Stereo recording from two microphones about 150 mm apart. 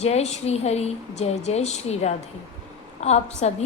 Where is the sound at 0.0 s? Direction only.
45° left (ahead or behind).